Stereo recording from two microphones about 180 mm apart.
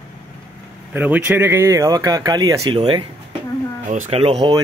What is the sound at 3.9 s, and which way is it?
Speech, 40° right (ahead or behind).